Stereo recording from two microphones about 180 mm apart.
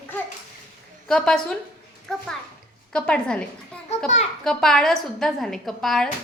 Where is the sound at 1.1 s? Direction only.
5° left (ahead or behind).